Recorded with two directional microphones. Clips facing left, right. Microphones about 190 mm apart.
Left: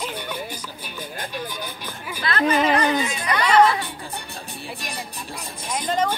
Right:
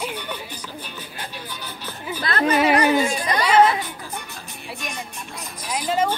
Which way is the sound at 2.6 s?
10° right (ahead or behind).